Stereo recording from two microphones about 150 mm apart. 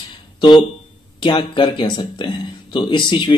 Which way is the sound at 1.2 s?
30° left (ahead or behind).